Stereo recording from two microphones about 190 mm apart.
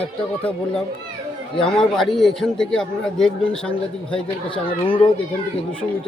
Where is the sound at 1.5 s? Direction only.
5° left (ahead or behind).